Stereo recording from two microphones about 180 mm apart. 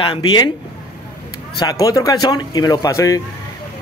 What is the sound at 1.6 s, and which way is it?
A man's voice, 20° left (ahead or behind).